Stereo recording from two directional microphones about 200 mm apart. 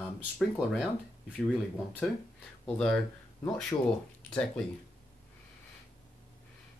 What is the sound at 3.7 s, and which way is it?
Speech, 20° left (ahead or behind).